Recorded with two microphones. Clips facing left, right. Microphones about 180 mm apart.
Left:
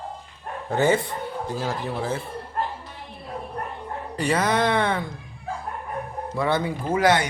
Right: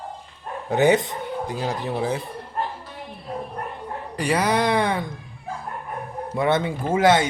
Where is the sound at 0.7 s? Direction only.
20° right (ahead or behind).